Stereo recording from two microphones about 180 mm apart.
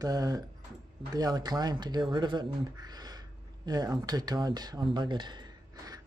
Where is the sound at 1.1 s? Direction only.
20° right (ahead or behind).